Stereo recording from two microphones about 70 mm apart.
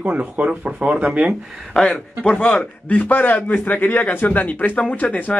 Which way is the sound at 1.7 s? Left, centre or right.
Centre.